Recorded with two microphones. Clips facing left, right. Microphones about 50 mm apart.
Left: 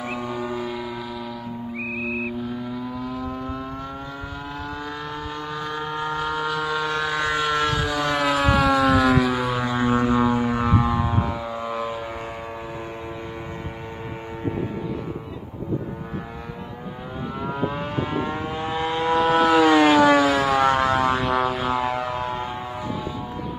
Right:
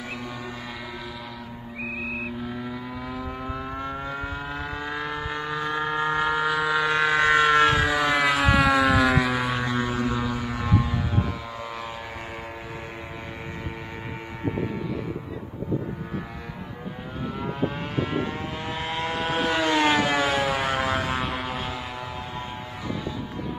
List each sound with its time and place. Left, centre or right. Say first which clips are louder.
0.3 s a sound: left 8 dB; centre
2.0 s vehicle: left 6 dB; centre
2.4 s vehicle: left 3 dB; centre
4.8 s vehicle: right 1 dB; right
5.8 s vehicle: right 3 dB; right
6.2 s a sound: right 2 dB; centre
7.1 s vehicle: right 7 dB; right
7.9 s civil defense siren: even; centre
9.8 s music: left 7 dB; left
11.2 s vehicle: left 5 dB; centre
18.2 s vehicle: left 4 dB; centre
20.4 s music: left 6 dB; left
21.4 s a sound: left 8 dB; centre